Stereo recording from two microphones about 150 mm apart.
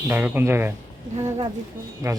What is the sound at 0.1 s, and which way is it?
Speech, 15° right (ahead or behind).